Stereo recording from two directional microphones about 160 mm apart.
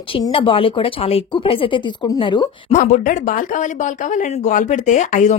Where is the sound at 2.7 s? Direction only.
50° left (ahead or behind).